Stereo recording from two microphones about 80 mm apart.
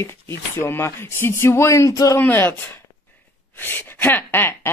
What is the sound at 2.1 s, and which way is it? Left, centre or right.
Speech, left.